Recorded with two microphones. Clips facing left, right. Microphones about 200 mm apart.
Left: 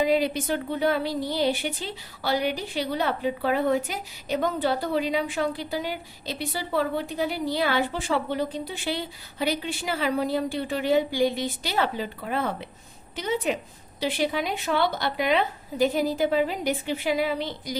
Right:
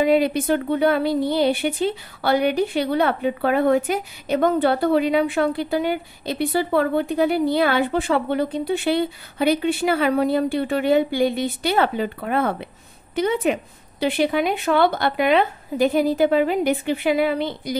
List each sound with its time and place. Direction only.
0.0 s speech: 60° right (ahead or behind)